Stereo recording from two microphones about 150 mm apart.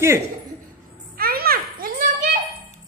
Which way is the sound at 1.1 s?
90° right.